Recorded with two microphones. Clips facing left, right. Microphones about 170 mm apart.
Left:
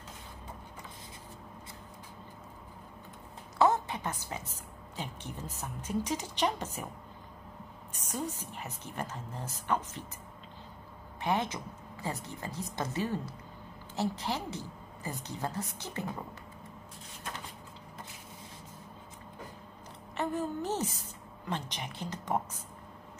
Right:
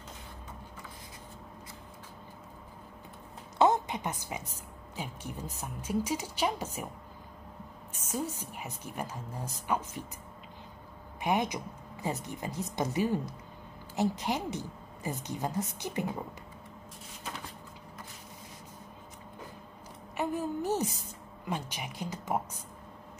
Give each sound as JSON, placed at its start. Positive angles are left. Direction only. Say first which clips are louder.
{"t": 3.5, "sound": "a woman's voice", "louder": "right 1 dB", "side_deg": -20}
{"t": 8.1, "sound": "a woman's voice", "louder": "right 2 dB", "side_deg": -10}
{"t": 11.1, "sound": "a woman's voice", "louder": "right 2 dB", "side_deg": -15}
{"t": 20.2, "sound": "a woman's voice", "louder": "right 1 dB", "side_deg": -10}